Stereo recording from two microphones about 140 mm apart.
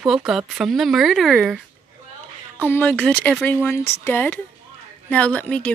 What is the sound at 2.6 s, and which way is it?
Speech, 15° left (ahead or behind).